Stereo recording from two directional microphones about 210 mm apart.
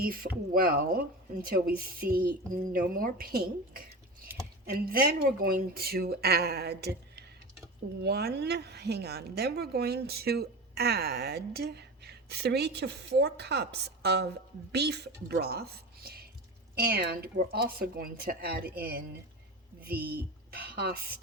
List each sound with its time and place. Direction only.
0.0 s a woman's voice: 45° right (ahead or behind)